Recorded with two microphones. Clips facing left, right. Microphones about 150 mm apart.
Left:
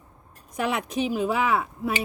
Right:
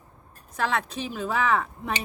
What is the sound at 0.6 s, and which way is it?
Speech, 15° left (ahead or behind).